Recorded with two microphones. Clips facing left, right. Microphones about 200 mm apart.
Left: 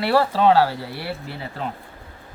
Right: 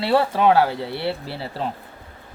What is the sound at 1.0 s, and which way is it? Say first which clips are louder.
Speech: right 4 dB; 35° right (ahead or behind).